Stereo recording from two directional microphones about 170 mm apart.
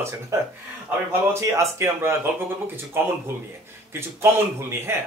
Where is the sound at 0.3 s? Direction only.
20° right (ahead or behind).